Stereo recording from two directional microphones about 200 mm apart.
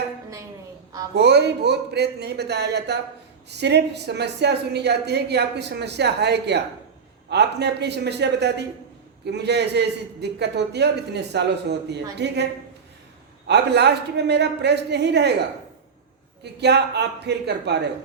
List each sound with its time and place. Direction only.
1.1 s a woman's voice: 55° right (ahead or behind)
13.5 s a woman's voice: 60° right (ahead or behind)
16.4 s a woman's voice: 55° right (ahead or behind)